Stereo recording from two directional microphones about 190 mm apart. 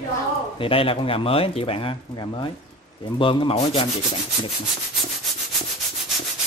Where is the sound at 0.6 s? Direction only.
30° left (ahead or behind).